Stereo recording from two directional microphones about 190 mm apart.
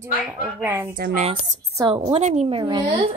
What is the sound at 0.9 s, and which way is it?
Speech, 45° right (ahead or behind).